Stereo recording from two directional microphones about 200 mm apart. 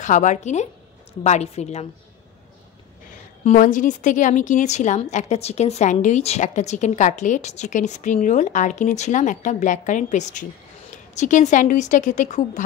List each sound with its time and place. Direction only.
0.0 s a woman's voice: 40° left (ahead or behind)
3.4 s a woman's voice: 40° left (ahead or behind)